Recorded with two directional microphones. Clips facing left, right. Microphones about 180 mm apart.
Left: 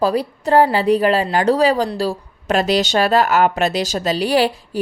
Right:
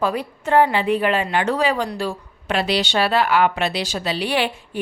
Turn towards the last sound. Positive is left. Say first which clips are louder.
# left 6 dB
turn(degrees=40)  # may be behind; listen again after turning